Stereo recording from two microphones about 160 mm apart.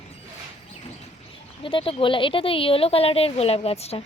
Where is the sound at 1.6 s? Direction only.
35° left (ahead or behind).